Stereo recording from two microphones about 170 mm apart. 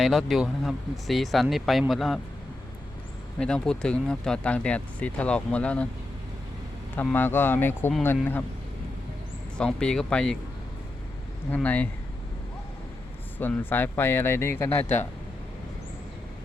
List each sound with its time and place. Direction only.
0.0 s speech: centre (ahead or behind)
3.3 s speech: 5° left (ahead or behind)
6.9 s speech: 10° left (ahead or behind)
9.6 s speech: 5° left (ahead or behind)
11.5 s speech: 10° left (ahead or behind)
13.4 s speech: 10° left (ahead or behind)